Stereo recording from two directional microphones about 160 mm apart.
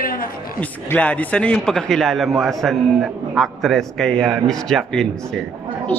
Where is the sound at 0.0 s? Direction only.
65° left (ahead or behind).